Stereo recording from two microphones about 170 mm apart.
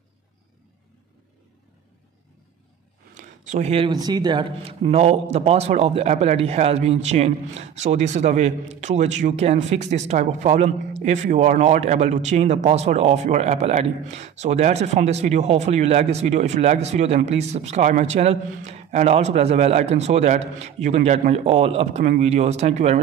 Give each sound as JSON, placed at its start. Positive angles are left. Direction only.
{"t": 3.2, "sound": "a man's voice", "side_deg": -45}